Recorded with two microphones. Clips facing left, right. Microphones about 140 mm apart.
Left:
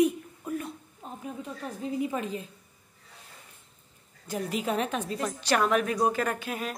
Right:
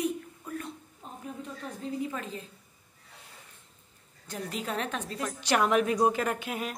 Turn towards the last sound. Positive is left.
turn(degrees=-15)  # may be behind; listen again after turning